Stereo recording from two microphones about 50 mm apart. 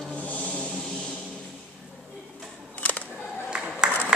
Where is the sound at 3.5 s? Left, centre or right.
Centre.